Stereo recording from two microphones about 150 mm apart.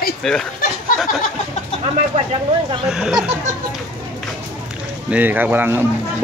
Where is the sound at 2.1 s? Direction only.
40° right (ahead or behind).